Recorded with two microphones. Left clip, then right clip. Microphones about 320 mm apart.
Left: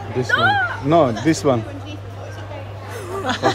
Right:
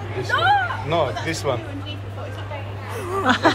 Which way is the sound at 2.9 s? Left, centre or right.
Centre.